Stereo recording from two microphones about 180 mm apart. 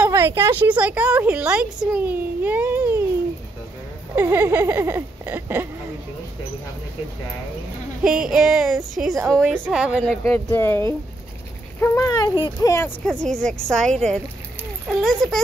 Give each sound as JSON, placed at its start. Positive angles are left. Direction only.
{"t": 0.0, "sound": "a woman's voice", "side_deg": -15}
{"t": 4.1, "sound": "a woman's voice", "side_deg": -10}
{"t": 8.0, "sound": "speech", "side_deg": -5}
{"t": 10.2, "sound": "speech", "side_deg": 15}
{"t": 13.0, "sound": "speech", "side_deg": 5}